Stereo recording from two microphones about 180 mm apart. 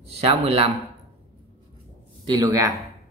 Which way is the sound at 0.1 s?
35° right (ahead or behind).